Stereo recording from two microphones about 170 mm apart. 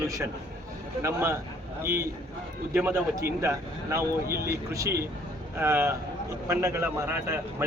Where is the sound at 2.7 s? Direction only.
10° right (ahead or behind).